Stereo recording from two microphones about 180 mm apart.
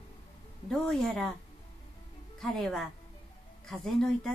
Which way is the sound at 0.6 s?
Centre (ahead or behind).